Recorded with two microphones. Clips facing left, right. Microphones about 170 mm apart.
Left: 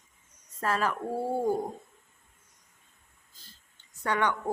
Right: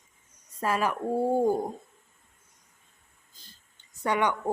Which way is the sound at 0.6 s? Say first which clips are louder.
Right 2 dB; 15° right (ahead or behind).